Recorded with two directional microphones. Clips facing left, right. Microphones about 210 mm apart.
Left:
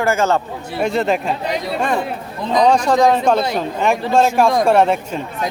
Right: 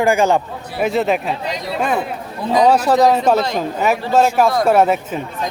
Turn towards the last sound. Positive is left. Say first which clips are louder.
# even
turn(degrees=-5)  # may be behind; listen again after turning